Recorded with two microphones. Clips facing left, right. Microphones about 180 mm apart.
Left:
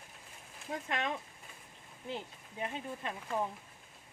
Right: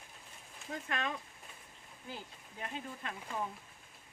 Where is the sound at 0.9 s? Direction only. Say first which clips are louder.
Left 2 dB; 20° left (ahead or behind).